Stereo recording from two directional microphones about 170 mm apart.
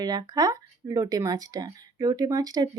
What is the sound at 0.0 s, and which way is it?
Speech, 25° right (ahead or behind).